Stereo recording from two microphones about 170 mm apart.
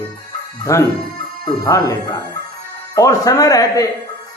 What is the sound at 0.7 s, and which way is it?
A man's voice, 20° left (ahead or behind).